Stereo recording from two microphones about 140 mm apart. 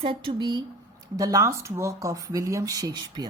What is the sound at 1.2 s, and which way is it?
A woman's voice, 20° right (ahead or behind).